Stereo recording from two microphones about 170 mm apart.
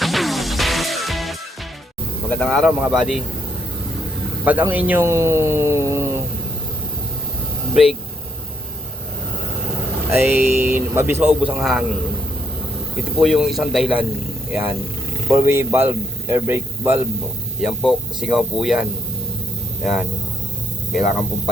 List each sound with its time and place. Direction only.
0.0 s music: centre (ahead or behind)
2.3 s speech: 5° left (ahead or behind)
4.4 s a man's voice: 10° right (ahead or behind)
10.1 s a man's voice: 10° right (ahead or behind)
13.1 s a man's voice: centre (ahead or behind)